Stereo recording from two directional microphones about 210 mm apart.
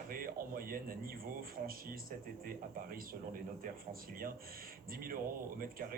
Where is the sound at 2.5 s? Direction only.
45° right (ahead or behind).